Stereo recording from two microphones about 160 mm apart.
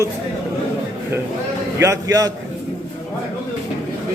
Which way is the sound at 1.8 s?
20° right (ahead or behind).